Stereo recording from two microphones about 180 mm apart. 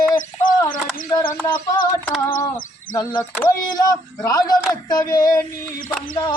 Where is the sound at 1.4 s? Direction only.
25° left (ahead or behind).